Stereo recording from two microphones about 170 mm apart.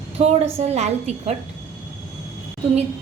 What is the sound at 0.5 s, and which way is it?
Speech, 40° right (ahead or behind).